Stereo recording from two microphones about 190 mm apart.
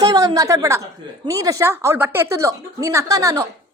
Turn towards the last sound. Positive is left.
turn(degrees=-15)  # may be behind; listen again after turning